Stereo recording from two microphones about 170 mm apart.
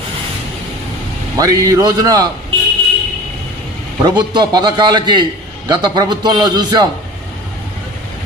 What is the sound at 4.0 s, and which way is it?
A man's voice, 25° right (ahead or behind).